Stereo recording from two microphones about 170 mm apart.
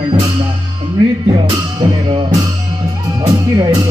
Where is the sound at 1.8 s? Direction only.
25° right (ahead or behind).